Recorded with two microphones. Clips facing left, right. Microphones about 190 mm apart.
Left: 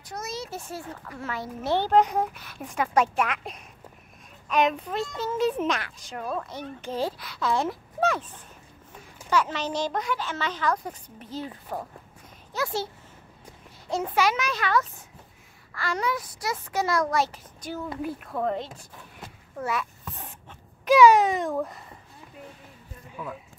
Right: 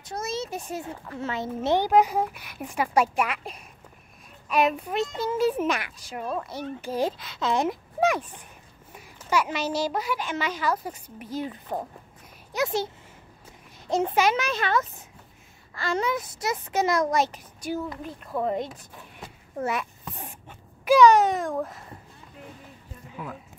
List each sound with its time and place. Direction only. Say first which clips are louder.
0.0 s speech: right 4 dB; 25° right (ahead or behind)
0.5 s a child's voice: right 3 dB; 15° right (ahead or behind)
7.1 s a child's voice: right 1 dB; 20° right (ahead or behind)
19.6 s a sound: right 1 dB; 20° right (ahead or behind)
21.0 s a child's voice: even; centre (ahead or behind)